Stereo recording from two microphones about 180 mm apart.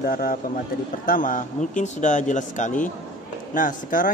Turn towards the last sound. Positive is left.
turn(degrees=50)  # may be behind; listen again after turning